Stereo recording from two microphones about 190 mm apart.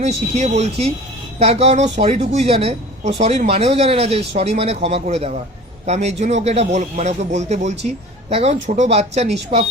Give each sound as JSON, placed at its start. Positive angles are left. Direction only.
{"t": 0.0, "sound": "speech", "side_deg": -35}